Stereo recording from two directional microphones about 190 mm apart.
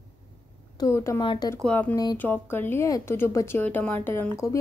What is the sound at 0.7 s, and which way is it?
Speech, 15° left (ahead or behind).